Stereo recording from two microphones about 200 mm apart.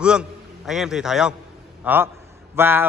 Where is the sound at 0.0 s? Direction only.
5° right (ahead or behind).